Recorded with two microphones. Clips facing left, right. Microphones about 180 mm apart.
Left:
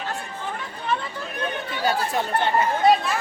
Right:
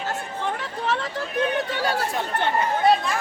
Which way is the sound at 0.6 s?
85° right.